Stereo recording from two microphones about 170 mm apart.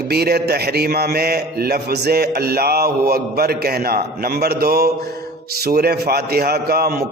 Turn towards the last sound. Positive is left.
turn(degrees=-65)  # may be behind; listen again after turning